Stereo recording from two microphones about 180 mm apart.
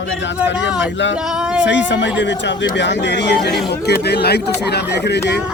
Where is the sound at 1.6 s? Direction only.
80° left.